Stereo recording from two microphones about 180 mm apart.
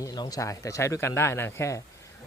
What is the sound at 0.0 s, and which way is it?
Speech, 20° left (ahead or behind).